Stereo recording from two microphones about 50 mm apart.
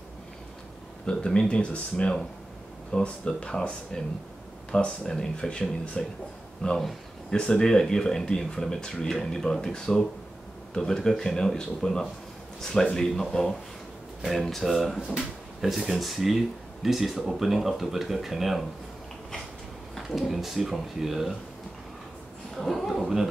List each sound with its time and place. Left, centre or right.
1.0 s speech: centre
20.1 s speech: centre
22.6 s speech: centre
23.0 s speech: centre